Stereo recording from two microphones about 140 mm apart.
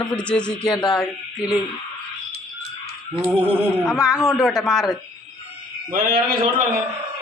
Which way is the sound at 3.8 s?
Centre (ahead or behind).